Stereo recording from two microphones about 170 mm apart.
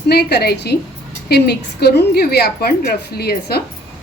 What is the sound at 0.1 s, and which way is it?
A woman's voice, 75° left (ahead or behind).